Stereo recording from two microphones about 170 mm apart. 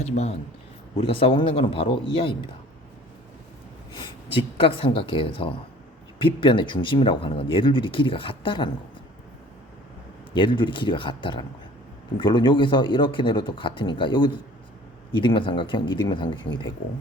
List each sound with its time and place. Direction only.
0.0 s a man's voice: 40° left (ahead or behind)
3.9 s speech: 30° left (ahead or behind)
10.3 s speech: 30° left (ahead or behind)